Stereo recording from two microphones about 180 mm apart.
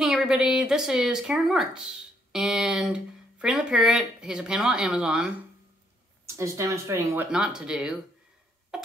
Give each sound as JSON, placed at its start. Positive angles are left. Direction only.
{"t": 0.0, "sound": "speech", "side_deg": -5}
{"t": 6.2, "sound": "speech", "side_deg": -15}
{"t": 7.2, "sound": "speech", "side_deg": -5}
{"t": 8.7, "sound": "a sound", "side_deg": -5}